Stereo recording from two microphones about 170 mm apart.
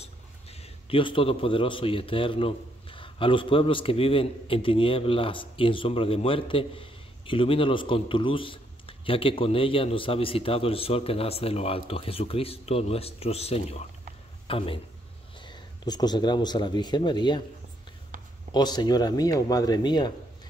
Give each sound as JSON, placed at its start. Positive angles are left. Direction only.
{"t": 0.0, "sound": "a man's voice", "side_deg": 35}
{"t": 18.1, "sound": "a sound", "side_deg": -50}
{"t": 18.5, "sound": "speech", "side_deg": 25}